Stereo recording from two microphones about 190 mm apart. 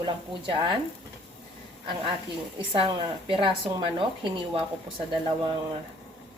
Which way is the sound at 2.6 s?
25° right (ahead or behind).